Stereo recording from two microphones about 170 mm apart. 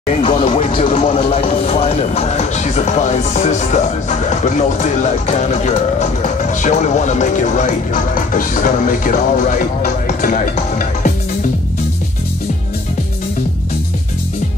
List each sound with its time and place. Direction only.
0.1 s speech: 35° left (ahead or behind)
5.2 s speech: 40° left (ahead or behind)
10.0 s music: 50° left (ahead or behind)